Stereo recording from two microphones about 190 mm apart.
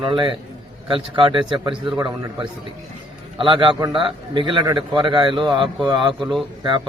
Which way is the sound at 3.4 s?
25° right (ahead or behind).